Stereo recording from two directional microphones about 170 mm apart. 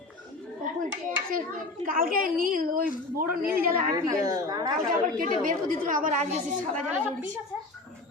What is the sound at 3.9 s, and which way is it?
Speech, 20° right (ahead or behind).